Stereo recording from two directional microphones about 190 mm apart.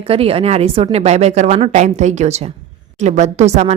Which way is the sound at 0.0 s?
30° right (ahead or behind).